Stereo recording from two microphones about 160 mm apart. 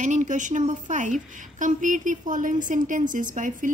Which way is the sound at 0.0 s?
50° right (ahead or behind).